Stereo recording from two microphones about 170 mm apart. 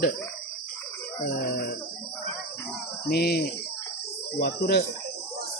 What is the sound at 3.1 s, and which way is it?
Speech, 70° left (ahead or behind).